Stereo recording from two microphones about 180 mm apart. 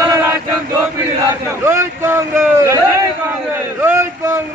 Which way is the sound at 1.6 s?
15° right (ahead or behind).